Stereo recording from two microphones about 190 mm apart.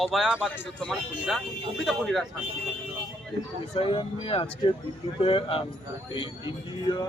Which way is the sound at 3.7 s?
30° left (ahead or behind).